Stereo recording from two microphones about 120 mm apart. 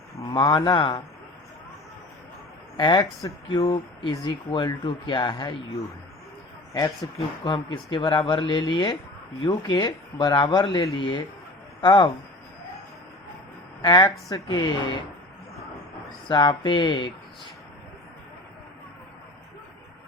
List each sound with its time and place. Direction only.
0.2 s speech: 40° left (ahead or behind)
2.7 s speech: 40° left (ahead or behind)
7.0 s speech: 35° left (ahead or behind)
13.8 s speech: 35° left (ahead or behind)
16.3 s speech: 40° left (ahead or behind)